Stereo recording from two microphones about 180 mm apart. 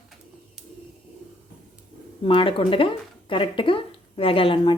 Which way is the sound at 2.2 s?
30° left (ahead or behind).